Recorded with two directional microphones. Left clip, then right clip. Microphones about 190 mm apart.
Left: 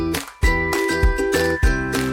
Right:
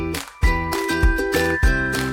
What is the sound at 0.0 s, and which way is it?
Music, centre (ahead or behind).